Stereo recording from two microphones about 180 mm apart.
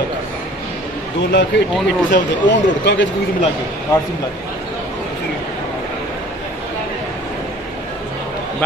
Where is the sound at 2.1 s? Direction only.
80° left.